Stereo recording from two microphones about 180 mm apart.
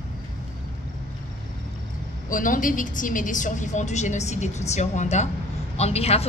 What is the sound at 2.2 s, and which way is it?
A woman's voice, 50° left (ahead or behind).